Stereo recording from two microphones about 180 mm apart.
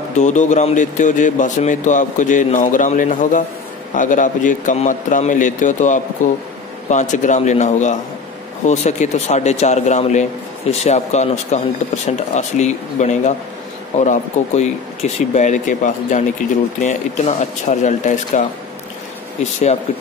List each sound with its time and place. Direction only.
0.2 s speech: 40° left (ahead or behind)